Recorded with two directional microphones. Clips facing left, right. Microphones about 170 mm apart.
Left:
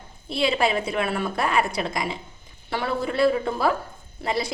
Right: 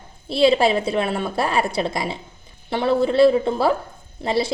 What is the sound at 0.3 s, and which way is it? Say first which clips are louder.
A woman's voice: right 6 dB; 30° right (ahead or behind).